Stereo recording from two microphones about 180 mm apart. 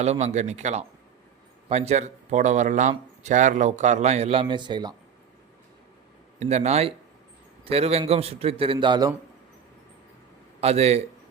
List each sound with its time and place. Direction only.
0.0 s a man's voice: 35° right (ahead or behind)
6.4 s a man's voice: 40° right (ahead or behind)
10.6 s a man's voice: 35° right (ahead or behind)